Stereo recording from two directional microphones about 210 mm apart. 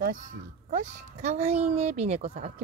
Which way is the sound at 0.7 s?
35° right (ahead or behind).